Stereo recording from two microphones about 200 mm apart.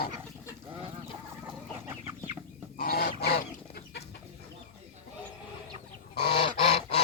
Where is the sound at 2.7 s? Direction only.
45° left (ahead or behind).